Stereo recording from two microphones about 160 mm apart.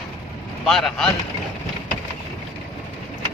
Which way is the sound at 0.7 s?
Centre (ahead or behind).